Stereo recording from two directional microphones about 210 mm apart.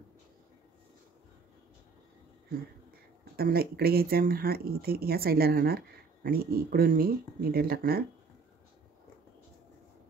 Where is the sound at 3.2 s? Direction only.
45° right (ahead or behind).